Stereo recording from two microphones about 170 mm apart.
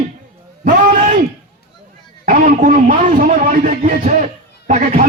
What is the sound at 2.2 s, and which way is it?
A man's voice, 50° right (ahead or behind).